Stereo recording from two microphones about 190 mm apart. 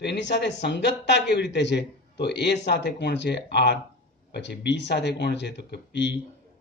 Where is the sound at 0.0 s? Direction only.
65° left (ahead or behind).